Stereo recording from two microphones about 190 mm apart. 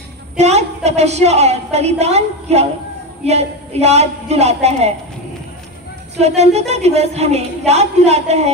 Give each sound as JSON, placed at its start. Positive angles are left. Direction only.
{"t": 0.4, "sound": "a woman's voice", "side_deg": -35}
{"t": 6.1, "sound": "a woman's voice", "side_deg": -35}